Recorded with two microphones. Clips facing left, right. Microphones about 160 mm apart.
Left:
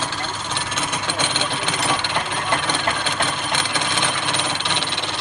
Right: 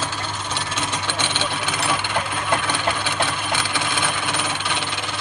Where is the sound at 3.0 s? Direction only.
10° right (ahead or behind).